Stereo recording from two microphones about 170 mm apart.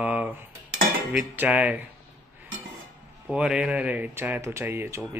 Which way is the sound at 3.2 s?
5° right (ahead or behind).